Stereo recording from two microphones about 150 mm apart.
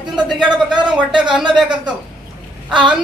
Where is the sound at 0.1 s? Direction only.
5° right (ahead or behind).